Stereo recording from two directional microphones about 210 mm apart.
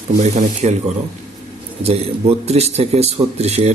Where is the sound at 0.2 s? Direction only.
35° right (ahead or behind).